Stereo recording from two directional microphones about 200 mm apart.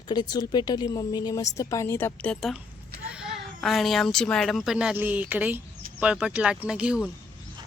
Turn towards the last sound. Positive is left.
turn(degrees=-5)  # may be behind; listen again after turning